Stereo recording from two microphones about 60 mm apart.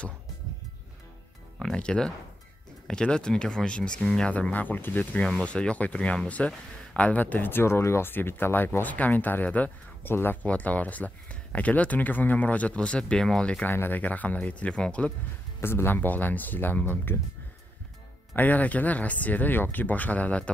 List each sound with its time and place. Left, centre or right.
1.8 s speech: centre
4.3 s speech: left
5.2 s speech: centre; by 7.6 s left
7.6 s speech: left
10.1 s speech: left
10.4 s speech: left
13.7 s speech: left
15.6 s speech: left
18.3 s speech: left